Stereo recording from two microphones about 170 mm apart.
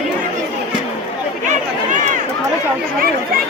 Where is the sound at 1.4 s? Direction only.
45° right (ahead or behind).